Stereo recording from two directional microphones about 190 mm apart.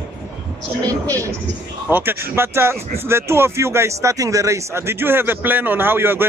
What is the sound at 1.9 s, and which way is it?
Speech, 10° right (ahead or behind).